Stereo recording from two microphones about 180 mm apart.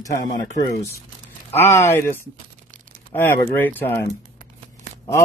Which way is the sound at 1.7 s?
15° left (ahead or behind).